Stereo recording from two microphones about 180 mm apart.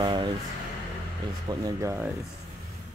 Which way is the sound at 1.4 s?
20° right (ahead or behind).